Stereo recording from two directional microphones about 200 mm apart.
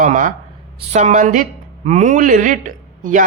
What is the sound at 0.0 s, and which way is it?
A woman's voice, 40° right (ahead or behind).